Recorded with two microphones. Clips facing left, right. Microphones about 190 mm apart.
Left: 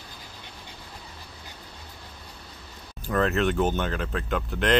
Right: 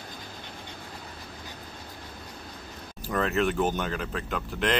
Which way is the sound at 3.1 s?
Centre (ahead or behind).